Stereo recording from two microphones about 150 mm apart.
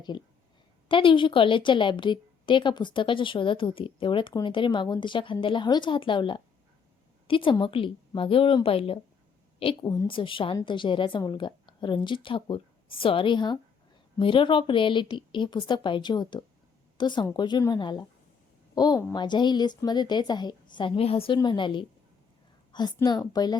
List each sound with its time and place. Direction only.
0.1 s a woman's voice: 30° left (ahead or behind)